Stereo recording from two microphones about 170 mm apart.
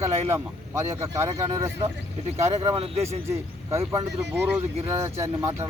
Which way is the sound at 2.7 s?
35° right (ahead or behind).